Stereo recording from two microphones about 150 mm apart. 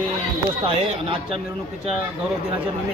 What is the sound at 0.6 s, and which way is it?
Speech, 40° right (ahead or behind).